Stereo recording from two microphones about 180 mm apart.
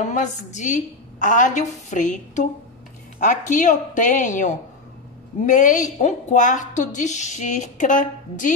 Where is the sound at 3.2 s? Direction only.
45° left (ahead or behind).